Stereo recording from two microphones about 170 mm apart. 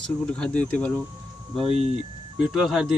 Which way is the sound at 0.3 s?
5° left (ahead or behind).